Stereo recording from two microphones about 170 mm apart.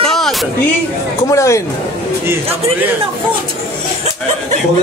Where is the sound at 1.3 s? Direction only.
15° left (ahead or behind).